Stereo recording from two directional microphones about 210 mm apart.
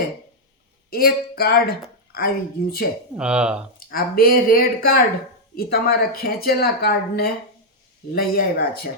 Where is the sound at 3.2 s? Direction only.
5° right (ahead or behind).